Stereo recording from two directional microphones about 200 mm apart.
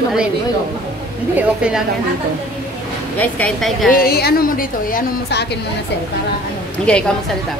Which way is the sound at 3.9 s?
50° left (ahead or behind).